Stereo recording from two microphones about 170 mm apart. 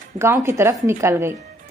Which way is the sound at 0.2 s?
15° right (ahead or behind).